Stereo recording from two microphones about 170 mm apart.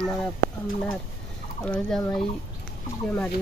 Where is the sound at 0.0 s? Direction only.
5° left (ahead or behind).